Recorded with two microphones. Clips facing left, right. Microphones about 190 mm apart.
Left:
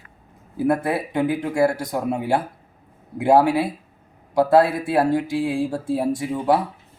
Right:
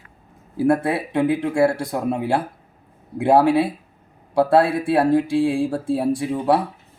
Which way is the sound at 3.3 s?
Centre (ahead or behind).